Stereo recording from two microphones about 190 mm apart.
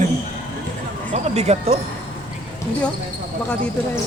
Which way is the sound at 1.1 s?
35° right (ahead or behind).